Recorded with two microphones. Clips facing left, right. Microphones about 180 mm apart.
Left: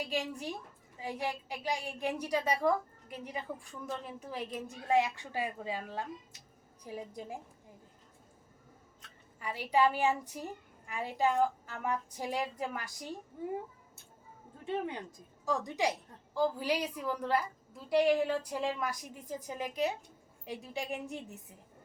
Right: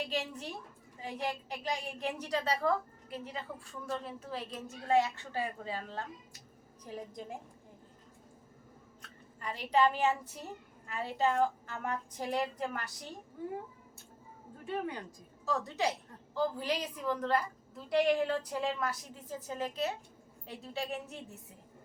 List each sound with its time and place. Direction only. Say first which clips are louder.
0.0 s a woman's voice: left 1 dB; 10° left (ahead or behind)
9.4 s a woman's voice: even; 10° left (ahead or behind)
14.6 s speech: left 1 dB; 25° left (ahead or behind)
15.4 s a woman's voice: left 1 dB; 15° left (ahead or behind)